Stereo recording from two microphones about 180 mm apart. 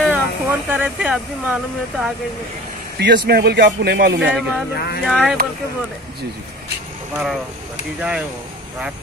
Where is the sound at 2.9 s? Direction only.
65° right (ahead or behind).